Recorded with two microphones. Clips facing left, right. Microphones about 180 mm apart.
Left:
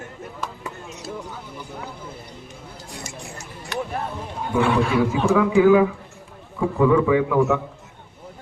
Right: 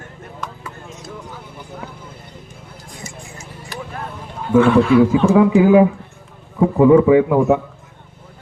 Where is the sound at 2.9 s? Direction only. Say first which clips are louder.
Right 1 dB; 70° left (ahead or behind).